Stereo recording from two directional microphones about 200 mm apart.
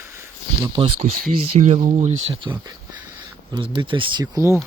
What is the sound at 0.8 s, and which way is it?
Speech, 25° right (ahead or behind).